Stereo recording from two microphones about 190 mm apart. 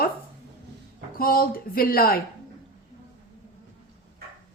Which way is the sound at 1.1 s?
50° left (ahead or behind).